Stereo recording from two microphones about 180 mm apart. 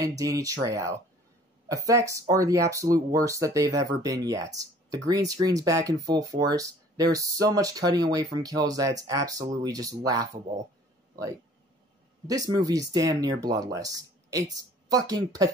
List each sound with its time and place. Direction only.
0.0 s speech: 20° right (ahead or behind)
12.3 s speech: 20° right (ahead or behind)